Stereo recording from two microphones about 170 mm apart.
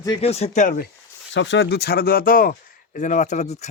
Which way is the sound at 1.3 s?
90° left.